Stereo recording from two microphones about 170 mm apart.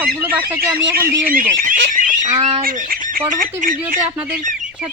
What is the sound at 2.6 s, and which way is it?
Goose, 60° right (ahead or behind).